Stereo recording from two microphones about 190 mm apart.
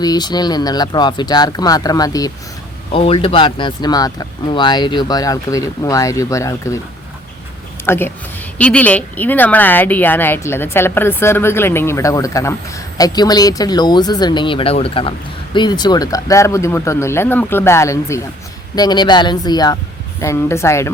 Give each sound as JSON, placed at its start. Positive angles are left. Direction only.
{"t": 0.0, "sound": "speech", "side_deg": 20}
{"t": 2.9, "sound": "speech", "side_deg": 30}
{"t": 7.9, "sound": "speech", "side_deg": 10}